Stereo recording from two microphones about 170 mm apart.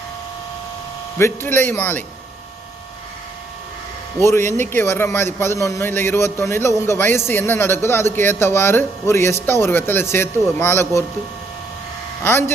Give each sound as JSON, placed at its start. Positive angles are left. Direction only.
{"t": 1.2, "sound": "speech", "side_deg": 15}
{"t": 4.2, "sound": "speech", "side_deg": 15}
{"t": 12.2, "sound": "speech", "side_deg": 15}